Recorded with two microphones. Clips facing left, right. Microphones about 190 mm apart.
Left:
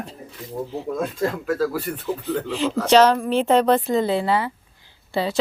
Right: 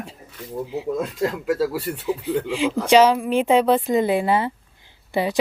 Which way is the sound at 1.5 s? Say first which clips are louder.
Right 1 dB; 20° right (ahead or behind).